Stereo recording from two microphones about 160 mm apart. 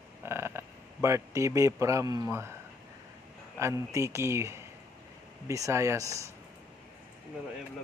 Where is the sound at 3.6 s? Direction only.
20° right (ahead or behind).